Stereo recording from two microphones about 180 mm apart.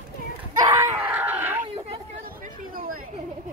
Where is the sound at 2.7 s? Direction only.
50° right (ahead or behind).